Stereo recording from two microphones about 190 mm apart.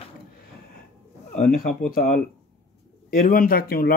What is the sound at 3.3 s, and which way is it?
Speech, 50° left (ahead or behind).